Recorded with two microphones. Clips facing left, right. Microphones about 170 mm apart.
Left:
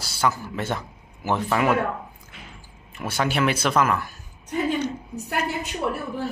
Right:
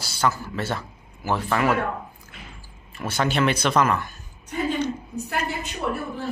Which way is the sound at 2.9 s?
10° left (ahead or behind).